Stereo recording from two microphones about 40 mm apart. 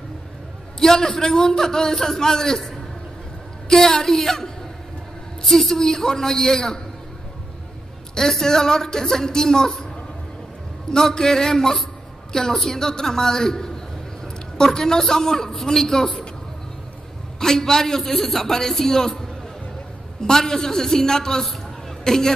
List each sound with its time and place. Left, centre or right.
0.7 s a man's voice: centre
8.1 s a man's voice: centre
10.9 s a man's voice: centre
17.4 s a man's voice: centre